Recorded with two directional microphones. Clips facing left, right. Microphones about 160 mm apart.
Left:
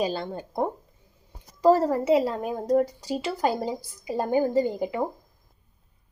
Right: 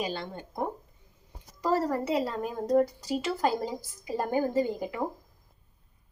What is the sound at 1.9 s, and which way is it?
Speech, 5° left (ahead or behind).